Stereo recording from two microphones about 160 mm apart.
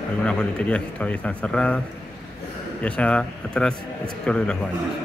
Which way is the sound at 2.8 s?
10° left (ahead or behind).